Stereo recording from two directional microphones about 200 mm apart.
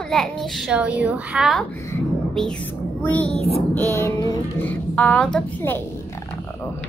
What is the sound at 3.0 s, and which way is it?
Speech, 10° left (ahead or behind).